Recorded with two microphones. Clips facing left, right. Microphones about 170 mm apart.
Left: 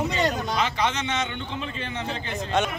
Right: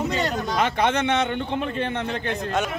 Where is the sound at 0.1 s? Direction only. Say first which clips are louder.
Right 1 dB; 55° right (ahead or behind).